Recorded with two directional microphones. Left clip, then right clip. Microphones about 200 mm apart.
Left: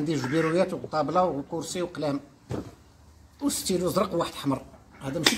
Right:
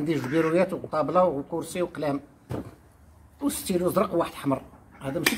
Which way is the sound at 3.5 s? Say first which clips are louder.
Right 1 dB; centre (ahead or behind).